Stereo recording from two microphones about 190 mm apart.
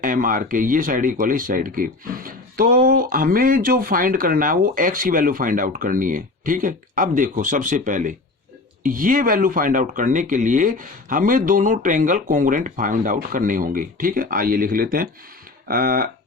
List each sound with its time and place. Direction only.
0.0 s speech: 45° right (ahead or behind)